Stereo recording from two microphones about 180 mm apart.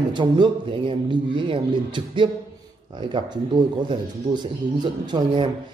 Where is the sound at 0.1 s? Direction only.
25° right (ahead or behind).